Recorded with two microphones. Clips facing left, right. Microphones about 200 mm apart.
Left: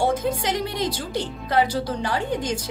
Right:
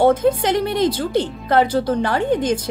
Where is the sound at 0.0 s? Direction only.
55° right (ahead or behind).